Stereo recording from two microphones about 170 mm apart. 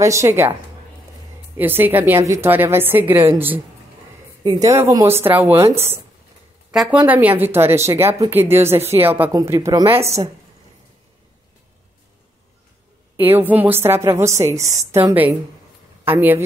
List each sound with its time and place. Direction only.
0.0 s a woman's voice: 15° right (ahead or behind)
1.6 s a woman's voice: 10° right (ahead or behind)
6.7 s a woman's voice: 5° right (ahead or behind); by 9.9 s 20° right (ahead or behind)
13.1 s a woman's voice: 10° right (ahead or behind)